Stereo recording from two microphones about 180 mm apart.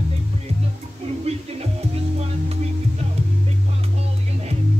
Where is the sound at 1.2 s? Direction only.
35° right (ahead or behind).